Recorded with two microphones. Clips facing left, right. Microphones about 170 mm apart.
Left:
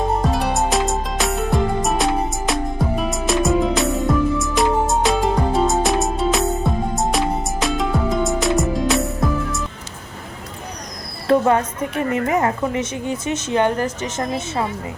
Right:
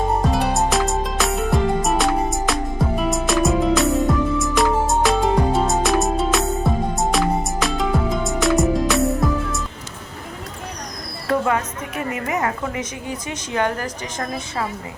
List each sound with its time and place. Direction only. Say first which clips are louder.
0.2 s music: even; centre (ahead or behind)
11.3 s a sound: left 5 dB; 35° left (ahead or behind)
12.1 s a woman's voice: left 4 dB; 30° left (ahead or behind)